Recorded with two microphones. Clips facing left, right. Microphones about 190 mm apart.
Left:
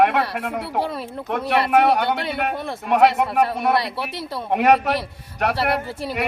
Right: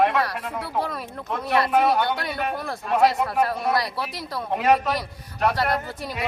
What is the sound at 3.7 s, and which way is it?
Speech, 25° left (ahead or behind).